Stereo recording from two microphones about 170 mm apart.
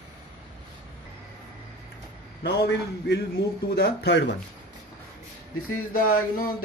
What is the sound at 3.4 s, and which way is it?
Speech, 80° left.